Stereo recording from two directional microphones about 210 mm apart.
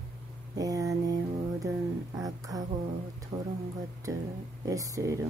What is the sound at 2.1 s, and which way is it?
Speech, 15° right (ahead or behind).